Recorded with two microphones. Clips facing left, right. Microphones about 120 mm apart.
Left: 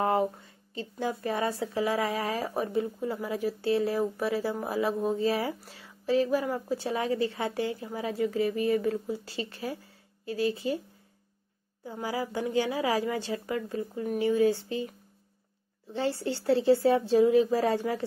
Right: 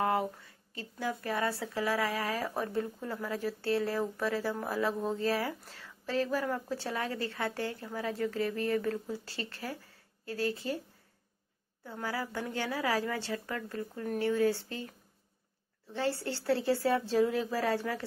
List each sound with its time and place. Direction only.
0.0 s speech: 25° left (ahead or behind)
11.8 s speech: 15° left (ahead or behind)
15.9 s speech: 15° left (ahead or behind)